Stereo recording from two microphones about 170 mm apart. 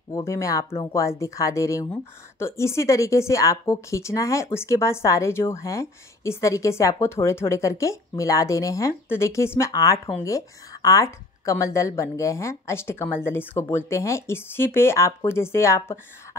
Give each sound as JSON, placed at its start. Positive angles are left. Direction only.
{"t": 0.1, "sound": "speech", "side_deg": 15}